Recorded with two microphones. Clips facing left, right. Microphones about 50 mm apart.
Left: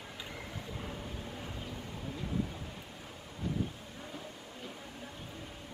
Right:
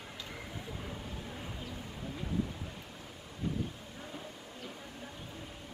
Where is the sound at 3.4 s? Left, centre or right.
Right.